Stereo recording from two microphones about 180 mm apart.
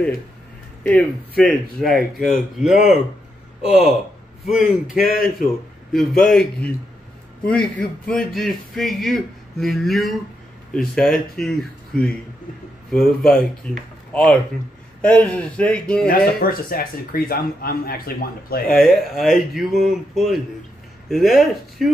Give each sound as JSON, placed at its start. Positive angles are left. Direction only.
{"t": 0.8, "sound": "speech", "side_deg": 5}
{"t": 16.1, "sound": "speech", "side_deg": 55}
{"t": 18.7, "sound": "speech", "side_deg": 0}